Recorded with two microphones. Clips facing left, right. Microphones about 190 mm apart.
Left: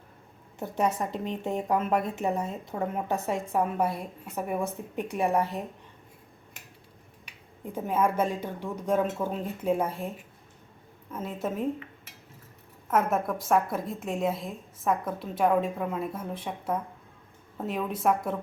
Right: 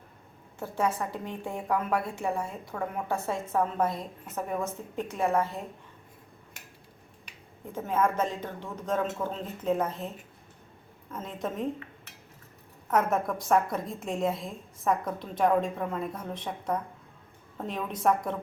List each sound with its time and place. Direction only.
0.6 s a woman's voice: 20° left (ahead or behind)
7.7 s a woman's voice: 10° left (ahead or behind)
11.1 s a woman's voice: 5° left (ahead or behind)
12.9 s a woman's voice: centre (ahead or behind)